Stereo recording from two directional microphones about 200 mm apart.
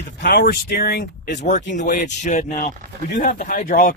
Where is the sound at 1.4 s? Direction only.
40° left (ahead or behind).